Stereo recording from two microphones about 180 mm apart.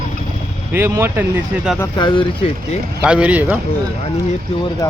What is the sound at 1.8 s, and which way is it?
Speech, 25° left (ahead or behind).